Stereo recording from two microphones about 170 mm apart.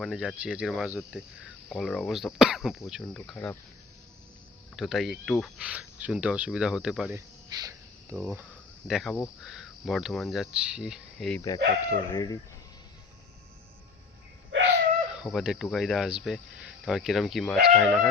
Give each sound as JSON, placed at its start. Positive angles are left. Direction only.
{"t": 0.0, "sound": "speech", "side_deg": 0}
{"t": 4.8, "sound": "speech", "side_deg": 0}
{"t": 7.5, "sound": "speech", "side_deg": -20}
{"t": 8.1, "sound": "speech", "side_deg": -10}
{"t": 11.3, "sound": "speech", "side_deg": 20}
{"t": 14.5, "sound": "a sound", "side_deg": -90}
{"t": 15.2, "sound": "speech", "side_deg": 0}